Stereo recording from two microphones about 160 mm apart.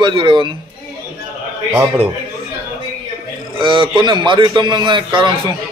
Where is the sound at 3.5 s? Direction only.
30° right (ahead or behind).